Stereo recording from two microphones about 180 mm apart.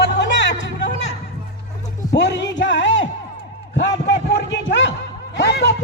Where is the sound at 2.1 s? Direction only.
75° left (ahead or behind).